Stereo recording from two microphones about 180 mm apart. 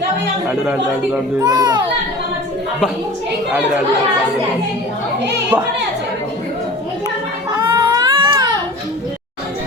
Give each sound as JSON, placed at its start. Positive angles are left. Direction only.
{"t": 0.4, "sound": "a man's voice", "side_deg": -10}
{"t": 1.4, "sound": "a child's voice", "side_deg": -20}
{"t": 7.5, "sound": "baby cry", "side_deg": -20}